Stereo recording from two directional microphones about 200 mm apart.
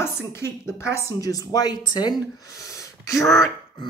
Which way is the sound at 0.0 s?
10° left (ahead or behind).